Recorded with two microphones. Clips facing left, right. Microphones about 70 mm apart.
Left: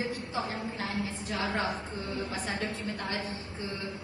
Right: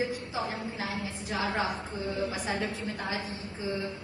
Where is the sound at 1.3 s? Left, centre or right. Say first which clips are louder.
Right 2 dB; centre.